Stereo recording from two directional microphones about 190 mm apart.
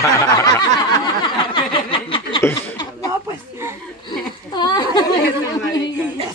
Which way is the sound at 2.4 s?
20° left (ahead or behind).